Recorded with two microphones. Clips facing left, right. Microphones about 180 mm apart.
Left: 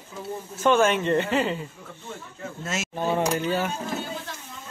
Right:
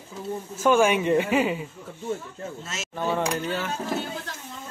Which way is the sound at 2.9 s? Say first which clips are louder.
Even; 15° left (ahead or behind).